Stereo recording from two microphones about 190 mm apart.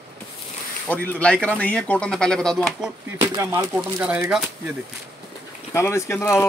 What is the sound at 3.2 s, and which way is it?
Speech, 15° right (ahead or behind).